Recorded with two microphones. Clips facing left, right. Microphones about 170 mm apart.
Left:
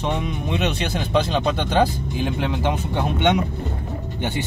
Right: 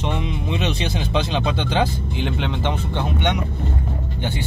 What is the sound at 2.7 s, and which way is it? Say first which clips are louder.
Speech: left 1 dB; 15° left (ahead or behind).